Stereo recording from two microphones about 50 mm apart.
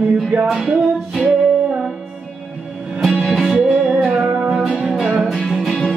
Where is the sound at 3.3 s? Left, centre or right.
Centre.